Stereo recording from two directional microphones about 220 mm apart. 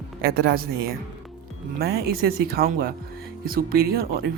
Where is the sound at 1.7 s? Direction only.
45° right (ahead or behind).